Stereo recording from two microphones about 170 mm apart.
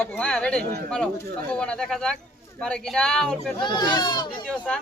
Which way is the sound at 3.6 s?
25° left (ahead or behind).